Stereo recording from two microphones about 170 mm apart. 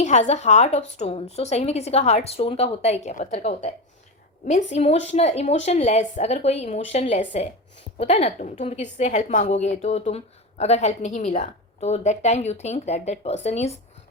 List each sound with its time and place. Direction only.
0.0 s a woman's voice: 45° left (ahead or behind)